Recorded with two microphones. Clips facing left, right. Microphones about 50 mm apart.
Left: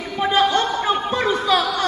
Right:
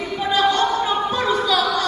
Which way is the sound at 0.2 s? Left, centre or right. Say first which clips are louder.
Left 1 dB; left.